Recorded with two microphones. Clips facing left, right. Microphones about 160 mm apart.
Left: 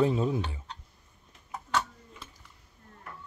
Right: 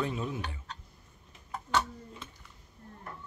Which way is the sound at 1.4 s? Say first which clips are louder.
Right 1 dB; 5° left (ahead or behind).